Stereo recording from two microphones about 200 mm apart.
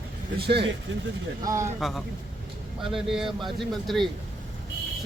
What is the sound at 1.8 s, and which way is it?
Speech, centre (ahead or behind).